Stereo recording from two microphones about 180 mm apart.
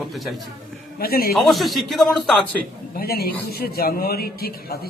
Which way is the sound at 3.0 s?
60° left (ahead or behind).